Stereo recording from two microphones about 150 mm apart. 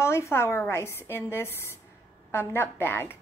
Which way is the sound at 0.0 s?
15° left (ahead or behind).